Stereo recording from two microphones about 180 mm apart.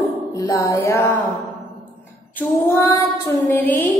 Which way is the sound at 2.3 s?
10° left (ahead or behind).